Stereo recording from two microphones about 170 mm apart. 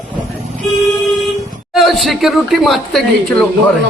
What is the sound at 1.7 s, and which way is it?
Speech, centre (ahead or behind).